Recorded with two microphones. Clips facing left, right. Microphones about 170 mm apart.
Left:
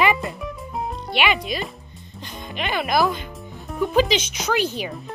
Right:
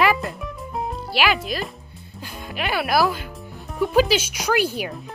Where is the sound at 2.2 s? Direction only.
5° right (ahead or behind).